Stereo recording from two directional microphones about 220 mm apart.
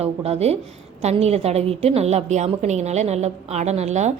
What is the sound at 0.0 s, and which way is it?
A woman's voice, 30° right (ahead or behind).